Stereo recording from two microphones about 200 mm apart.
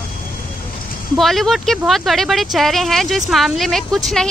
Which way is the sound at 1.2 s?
Centre (ahead or behind).